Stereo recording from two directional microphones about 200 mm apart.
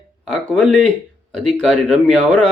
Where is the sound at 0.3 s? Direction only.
5° left (ahead or behind).